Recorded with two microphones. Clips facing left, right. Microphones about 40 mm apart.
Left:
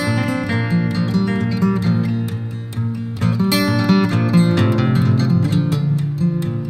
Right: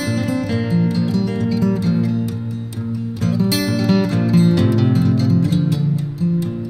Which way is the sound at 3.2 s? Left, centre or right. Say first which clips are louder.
Left 2 dB; left.